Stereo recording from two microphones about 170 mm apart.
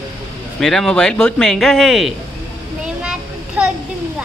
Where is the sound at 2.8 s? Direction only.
5° right (ahead or behind).